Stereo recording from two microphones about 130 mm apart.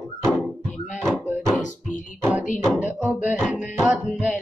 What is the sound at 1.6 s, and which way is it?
Music, 80° left.